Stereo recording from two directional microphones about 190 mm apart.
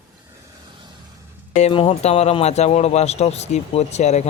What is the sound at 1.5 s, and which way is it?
Speech, 30° left (ahead or behind).